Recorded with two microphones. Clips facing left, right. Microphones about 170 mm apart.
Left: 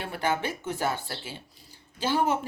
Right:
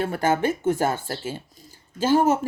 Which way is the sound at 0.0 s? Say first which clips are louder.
Right 7 dB; 45° right (ahead or behind).